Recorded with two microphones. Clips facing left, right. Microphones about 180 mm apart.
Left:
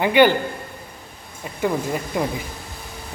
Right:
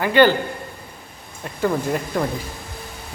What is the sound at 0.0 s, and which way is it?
Speech, 15° left (ahead or behind).